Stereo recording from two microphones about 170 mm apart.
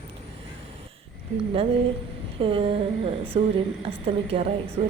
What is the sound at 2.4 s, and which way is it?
A woman's voice, 35° right (ahead or behind).